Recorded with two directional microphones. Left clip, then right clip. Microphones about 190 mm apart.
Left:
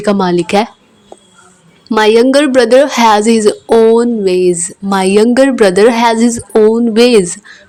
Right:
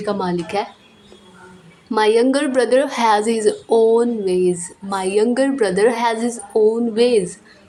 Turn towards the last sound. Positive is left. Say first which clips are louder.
# left 8 dB
turn(degrees=40)  # may be behind; listen again after turning